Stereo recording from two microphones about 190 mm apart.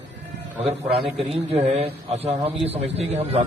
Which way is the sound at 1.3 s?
30° right (ahead or behind).